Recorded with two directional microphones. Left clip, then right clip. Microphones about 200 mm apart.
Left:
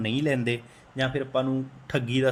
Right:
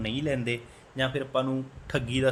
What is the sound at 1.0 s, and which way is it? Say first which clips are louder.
Speech: left 1 dB; 5° left (ahead or behind).